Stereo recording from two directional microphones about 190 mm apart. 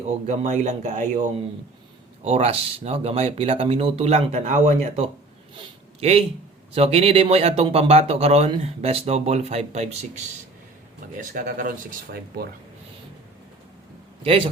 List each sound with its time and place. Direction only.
0.1 s speech: 40° right (ahead or behind)
2.2 s speech: 30° right (ahead or behind)
5.5 s a sound: 30° right (ahead or behind)
6.7 s speech: 30° right (ahead or behind); by 12.5 s 50° right (ahead or behind)
14.3 s a man's voice: 30° right (ahead or behind)